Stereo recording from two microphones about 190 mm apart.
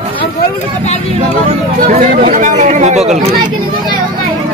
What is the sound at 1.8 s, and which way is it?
Speech, 45° right (ahead or behind).